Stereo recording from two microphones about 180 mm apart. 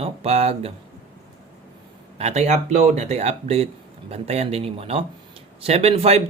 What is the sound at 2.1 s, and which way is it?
Speech, 40° right (ahead or behind).